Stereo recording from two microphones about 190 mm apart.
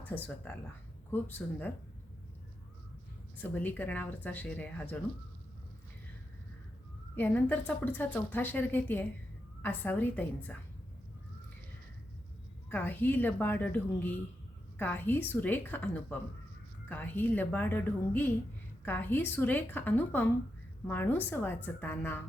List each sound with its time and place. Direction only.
0.0 s a woman's voice: 10° left (ahead or behind)
3.4 s a woman's voice: 10° left (ahead or behind)
7.2 s a woman's voice: 10° left (ahead or behind)
12.7 s a woman's voice: 10° left (ahead or behind)